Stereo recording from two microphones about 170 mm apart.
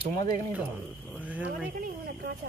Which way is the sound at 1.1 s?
10° right (ahead or behind).